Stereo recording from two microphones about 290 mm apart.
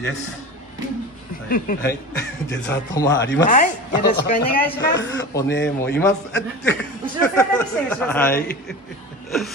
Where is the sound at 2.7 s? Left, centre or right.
Centre.